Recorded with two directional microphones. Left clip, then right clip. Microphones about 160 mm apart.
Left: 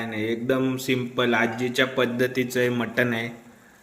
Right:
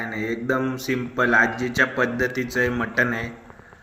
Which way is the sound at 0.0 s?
30° left (ahead or behind).